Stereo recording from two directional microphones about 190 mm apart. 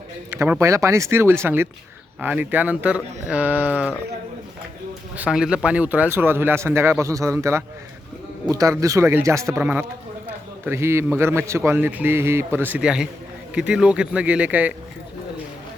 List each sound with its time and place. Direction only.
0.3 s speech: 10° right (ahead or behind)
5.1 s speech: 5° right (ahead or behind)